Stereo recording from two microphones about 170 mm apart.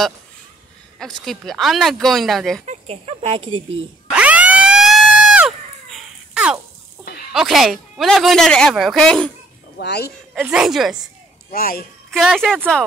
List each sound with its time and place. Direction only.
0.9 s speech: centre (ahead or behind)
2.6 s speech: 40° right (ahead or behind)
4.1 s a sound: 10° right (ahead or behind)
7.1 s snake: 65° left (ahead or behind)
7.3 s speech: centre (ahead or behind)
9.8 s speech: 75° left (ahead or behind)
10.3 s speech: 5° right (ahead or behind)
11.5 s a child's voice: 60° left (ahead or behind)
12.1 s speech: centre (ahead or behind)